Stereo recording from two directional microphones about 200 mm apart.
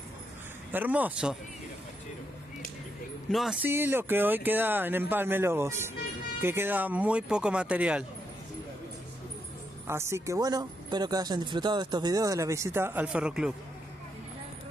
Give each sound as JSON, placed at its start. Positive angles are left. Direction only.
{"t": 0.7, "sound": "speech", "side_deg": -10}
{"t": 3.3, "sound": "speech", "side_deg": 0}
{"t": 9.8, "sound": "speech", "side_deg": -15}